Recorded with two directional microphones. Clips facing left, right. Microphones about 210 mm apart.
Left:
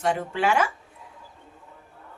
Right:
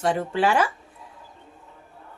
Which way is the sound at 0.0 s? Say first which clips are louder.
Right 2 dB; 35° right (ahead or behind).